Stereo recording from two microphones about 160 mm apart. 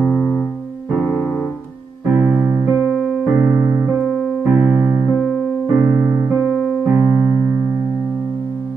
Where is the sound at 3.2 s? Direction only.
20° right (ahead or behind).